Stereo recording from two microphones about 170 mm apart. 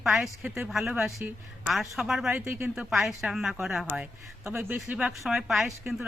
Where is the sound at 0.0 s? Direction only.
Centre (ahead or behind).